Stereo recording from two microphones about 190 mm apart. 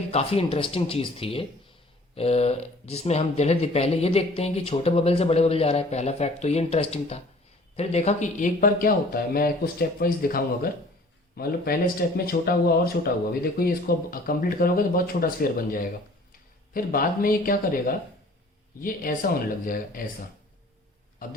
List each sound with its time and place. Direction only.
0.1 s speech: 30° left (ahead or behind); by 20.0 s 45° left (ahead or behind)